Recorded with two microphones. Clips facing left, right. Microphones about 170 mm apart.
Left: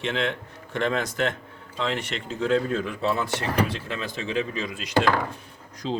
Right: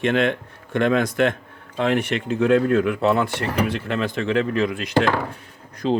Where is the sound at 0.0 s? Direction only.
55° right (ahead or behind).